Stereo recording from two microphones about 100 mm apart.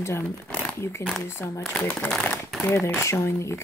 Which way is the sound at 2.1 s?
5° left (ahead or behind).